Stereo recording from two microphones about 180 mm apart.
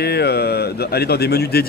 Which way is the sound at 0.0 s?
65° left (ahead or behind).